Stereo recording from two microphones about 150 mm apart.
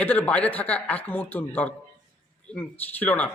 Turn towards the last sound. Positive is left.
turn(degrees=10)  # may be behind; listen again after turning